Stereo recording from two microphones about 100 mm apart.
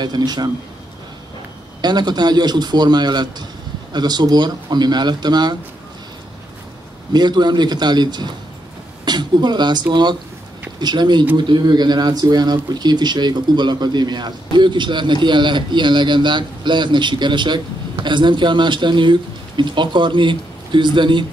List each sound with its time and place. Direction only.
0.0 s speech: 45° right (ahead or behind)
1.8 s speech: 45° right (ahead or behind)
7.1 s speech: 45° right (ahead or behind)